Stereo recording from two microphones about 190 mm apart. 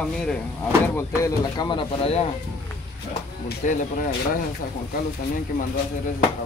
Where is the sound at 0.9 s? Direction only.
20° left (ahead or behind).